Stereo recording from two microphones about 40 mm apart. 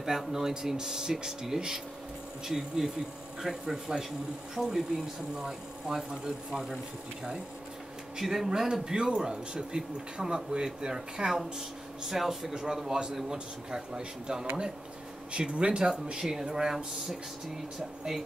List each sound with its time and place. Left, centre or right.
0.3 s speech: centre
8.2 s speech: centre; by 15.9 s right
16.1 s speech: centre